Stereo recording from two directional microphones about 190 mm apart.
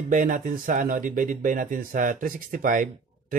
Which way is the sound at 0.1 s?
45° right (ahead or behind).